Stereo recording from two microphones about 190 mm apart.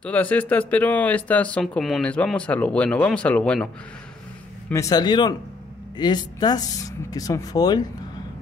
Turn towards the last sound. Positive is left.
turn(degrees=20)  # may be behind; listen again after turning